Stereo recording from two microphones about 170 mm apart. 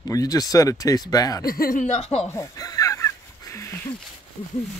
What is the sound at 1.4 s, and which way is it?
Speech, 60° left (ahead or behind).